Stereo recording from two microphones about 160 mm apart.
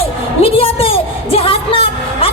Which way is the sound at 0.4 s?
35° left (ahead or behind).